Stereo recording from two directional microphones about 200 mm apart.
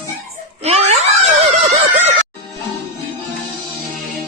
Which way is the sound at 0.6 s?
30° right (ahead or behind).